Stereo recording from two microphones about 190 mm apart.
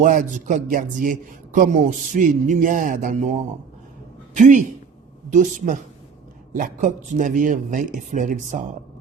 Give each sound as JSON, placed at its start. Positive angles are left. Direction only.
{"t": 0.0, "sound": "a man's voice", "side_deg": -45}